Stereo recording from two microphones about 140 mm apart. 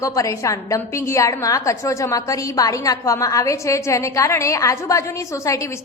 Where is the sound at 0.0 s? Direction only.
25° left (ahead or behind).